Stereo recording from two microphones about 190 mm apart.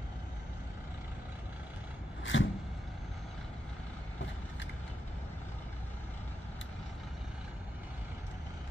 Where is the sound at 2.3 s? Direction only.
90° left.